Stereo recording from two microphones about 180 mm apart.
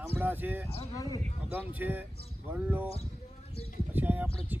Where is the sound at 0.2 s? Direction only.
10° right (ahead or behind).